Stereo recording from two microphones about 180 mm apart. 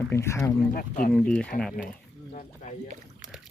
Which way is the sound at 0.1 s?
15° left (ahead or behind).